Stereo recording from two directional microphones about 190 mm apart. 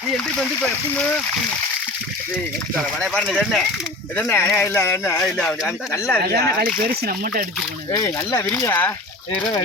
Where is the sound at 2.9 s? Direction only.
5° left (ahead or behind).